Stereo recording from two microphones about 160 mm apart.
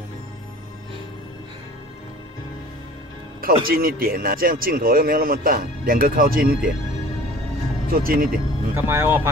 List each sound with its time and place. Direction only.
3.6 s speech: 65° right (ahead or behind)
7.9 s speech: 65° right (ahead or behind)
8.7 s speech: 15° right (ahead or behind)